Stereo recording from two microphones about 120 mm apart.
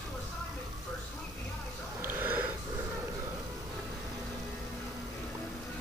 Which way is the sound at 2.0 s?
15° right (ahead or behind).